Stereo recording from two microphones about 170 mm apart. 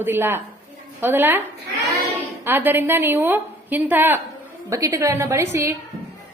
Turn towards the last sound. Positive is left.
turn(degrees=-15)  # may be behind; listen again after turning